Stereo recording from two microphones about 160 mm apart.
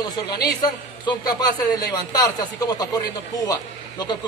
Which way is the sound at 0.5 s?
25° left (ahead or behind).